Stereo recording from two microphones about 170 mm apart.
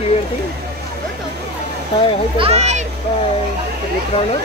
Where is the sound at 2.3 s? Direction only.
35° right (ahead or behind).